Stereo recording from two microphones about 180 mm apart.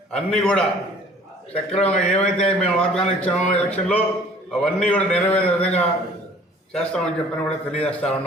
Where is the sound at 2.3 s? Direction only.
5° left (ahead or behind).